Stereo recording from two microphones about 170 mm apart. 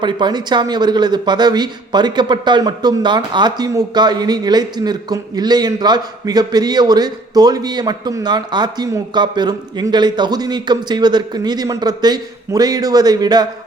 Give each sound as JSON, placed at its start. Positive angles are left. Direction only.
{"t": 0.0, "sound": "speech", "side_deg": -25}